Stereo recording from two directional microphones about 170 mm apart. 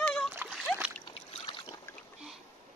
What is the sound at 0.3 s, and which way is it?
Splash, 10° right (ahead or behind).